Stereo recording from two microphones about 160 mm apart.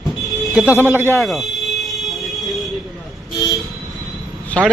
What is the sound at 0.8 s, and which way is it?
Speech, 15° right (ahead or behind).